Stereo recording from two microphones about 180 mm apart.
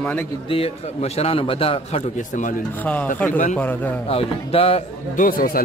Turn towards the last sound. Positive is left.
turn(degrees=50)  # may be behind; listen again after turning